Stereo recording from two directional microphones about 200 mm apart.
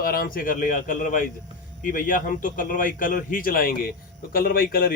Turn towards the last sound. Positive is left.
turn(degrees=45)  # may be behind; listen again after turning